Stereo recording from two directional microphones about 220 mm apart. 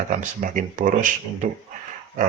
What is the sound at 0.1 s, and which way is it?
Speech, 35° right (ahead or behind).